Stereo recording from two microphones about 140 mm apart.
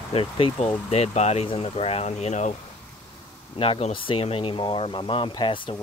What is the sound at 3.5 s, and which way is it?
Speech, 45° left (ahead or behind).